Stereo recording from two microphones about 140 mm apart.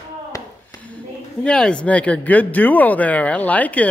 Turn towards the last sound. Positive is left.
turn(degrees=10)  # may be behind; listen again after turning